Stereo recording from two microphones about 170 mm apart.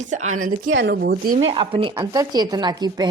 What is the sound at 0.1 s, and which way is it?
Speech, 45° right (ahead or behind).